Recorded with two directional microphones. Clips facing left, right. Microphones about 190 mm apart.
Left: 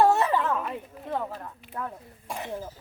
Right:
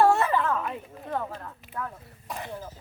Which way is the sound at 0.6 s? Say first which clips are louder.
Even; 5° left (ahead or behind).